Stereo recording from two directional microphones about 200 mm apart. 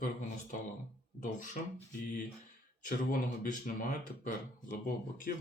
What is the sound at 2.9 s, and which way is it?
Speech, 45° left (ahead or behind).